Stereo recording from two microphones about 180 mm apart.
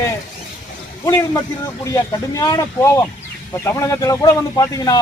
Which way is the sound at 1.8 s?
15° left (ahead or behind).